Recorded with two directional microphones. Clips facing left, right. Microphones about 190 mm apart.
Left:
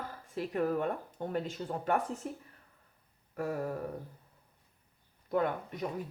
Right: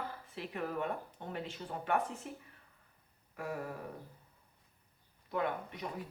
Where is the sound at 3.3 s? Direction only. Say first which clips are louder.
Left 6 dB; 45° left (ahead or behind).